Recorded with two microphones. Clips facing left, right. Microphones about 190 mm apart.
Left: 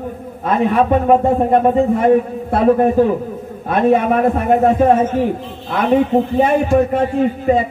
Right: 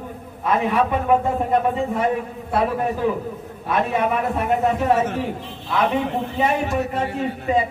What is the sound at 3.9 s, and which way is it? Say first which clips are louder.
A man's voice: left 8 dB; 50° left (ahead or behind).